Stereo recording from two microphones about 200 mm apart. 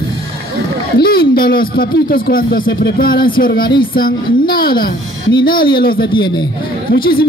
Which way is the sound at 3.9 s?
45° left (ahead or behind).